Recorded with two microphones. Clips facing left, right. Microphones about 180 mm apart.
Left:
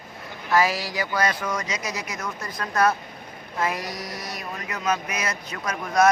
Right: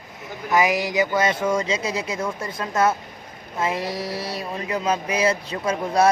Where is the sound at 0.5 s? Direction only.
20° right (ahead or behind).